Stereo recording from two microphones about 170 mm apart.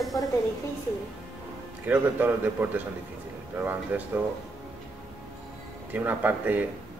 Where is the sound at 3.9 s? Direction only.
10° right (ahead or behind).